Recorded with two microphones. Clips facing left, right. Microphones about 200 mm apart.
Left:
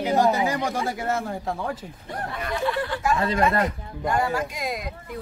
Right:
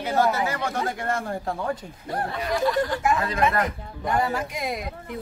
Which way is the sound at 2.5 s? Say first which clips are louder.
Right 3 dB; 40° right (ahead or behind).